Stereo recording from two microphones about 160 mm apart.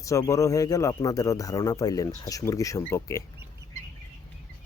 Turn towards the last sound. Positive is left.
turn(degrees=20)  # may be behind; listen again after turning